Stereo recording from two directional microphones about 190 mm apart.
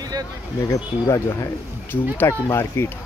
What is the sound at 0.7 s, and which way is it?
Speech, 15° left (ahead or behind).